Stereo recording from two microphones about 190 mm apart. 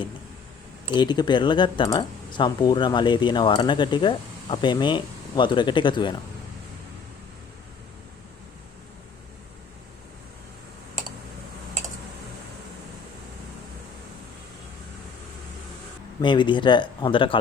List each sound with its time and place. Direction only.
0.9 s speech: 25° left (ahead or behind)
16.2 s speech: 25° left (ahead or behind)